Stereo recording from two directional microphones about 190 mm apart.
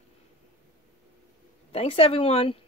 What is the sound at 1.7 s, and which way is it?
Speech, 30° left (ahead or behind).